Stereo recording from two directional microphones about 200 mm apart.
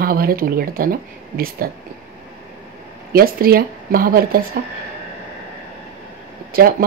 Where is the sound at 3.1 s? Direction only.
50° right (ahead or behind).